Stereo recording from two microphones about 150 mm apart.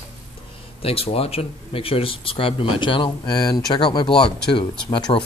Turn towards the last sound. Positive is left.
turn(degrees=30)  # may be behind; listen again after turning